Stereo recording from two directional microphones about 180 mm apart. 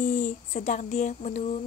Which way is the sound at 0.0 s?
50° left (ahead or behind).